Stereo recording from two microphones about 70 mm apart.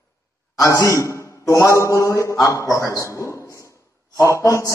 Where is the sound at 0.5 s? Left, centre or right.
Left.